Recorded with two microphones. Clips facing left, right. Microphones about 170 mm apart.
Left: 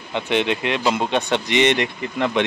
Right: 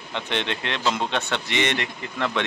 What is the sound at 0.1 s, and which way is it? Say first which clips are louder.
Speech: left 7 dB; 10° left (ahead or behind).